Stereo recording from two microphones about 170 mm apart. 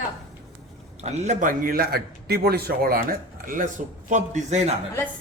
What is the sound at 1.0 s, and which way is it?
A man's voice, 40° right (ahead or behind).